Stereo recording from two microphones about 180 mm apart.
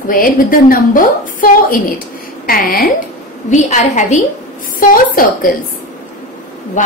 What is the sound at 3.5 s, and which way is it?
A woman's voice, 40° left (ahead or behind).